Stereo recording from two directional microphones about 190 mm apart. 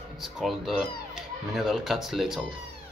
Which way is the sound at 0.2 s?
Centre (ahead or behind).